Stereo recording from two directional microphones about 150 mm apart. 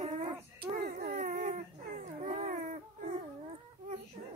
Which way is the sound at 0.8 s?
75° right (ahead or behind).